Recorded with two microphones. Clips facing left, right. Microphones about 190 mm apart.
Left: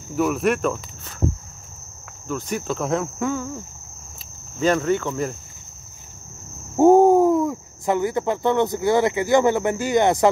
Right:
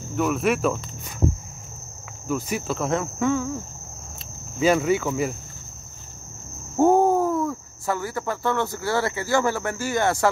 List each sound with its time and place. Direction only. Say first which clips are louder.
0.1 s speech: left 2 dB; 5° left (ahead or behind)
2.2 s cricket: even; 10° right (ahead or behind)
4.6 s speech: even; 10° right (ahead or behind)
6.8 s speech: left 5 dB; 15° left (ahead or behind)